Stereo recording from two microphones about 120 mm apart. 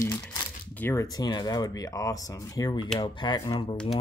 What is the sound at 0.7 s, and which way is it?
Speech, 20° left (ahead or behind).